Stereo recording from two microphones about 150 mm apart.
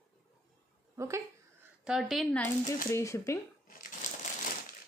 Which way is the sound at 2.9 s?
20° left (ahead or behind).